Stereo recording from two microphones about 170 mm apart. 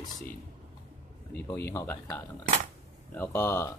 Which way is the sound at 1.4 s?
15° left (ahead or behind).